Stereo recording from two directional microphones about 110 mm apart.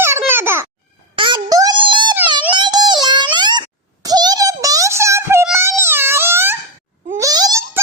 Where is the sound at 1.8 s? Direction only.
45° right (ahead or behind); by 5.4 s 25° right (ahead or behind).